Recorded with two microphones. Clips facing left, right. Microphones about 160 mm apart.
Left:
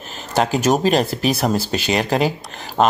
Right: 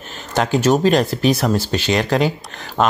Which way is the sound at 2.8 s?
35° left (ahead or behind).